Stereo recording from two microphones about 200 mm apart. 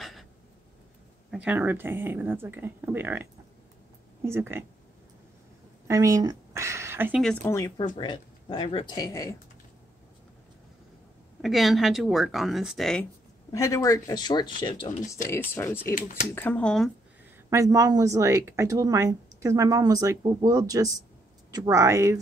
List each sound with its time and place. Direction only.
0.0 s a sound: centre (ahead or behind)
1.3 s speech: 5° right (ahead or behind)
5.9 s a sound: 15° right (ahead or behind)
7.2 s speech: 15° left (ahead or behind)
8.0 s speech: 25° left (ahead or behind)
11.4 s speech: centre (ahead or behind)
13.5 s speech: 15° left (ahead or behind)
15.2 s speech: 15° left (ahead or behind)
17.5 s speech: 15° right (ahead or behind)